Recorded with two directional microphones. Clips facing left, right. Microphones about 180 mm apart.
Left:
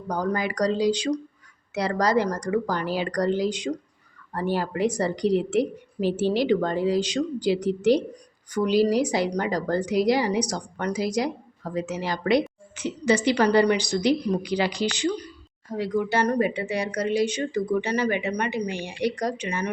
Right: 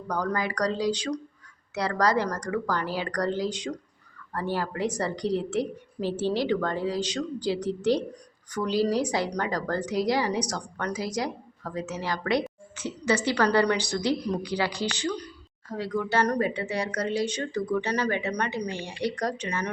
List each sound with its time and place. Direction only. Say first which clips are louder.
0.1 s a woman's voice: left 2 dB; 20° left (ahead or behind)
16.6 s a woman's voice: left 2 dB; 10° left (ahead or behind)